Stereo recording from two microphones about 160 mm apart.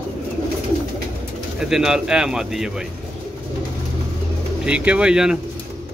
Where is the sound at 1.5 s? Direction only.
5° right (ahead or behind).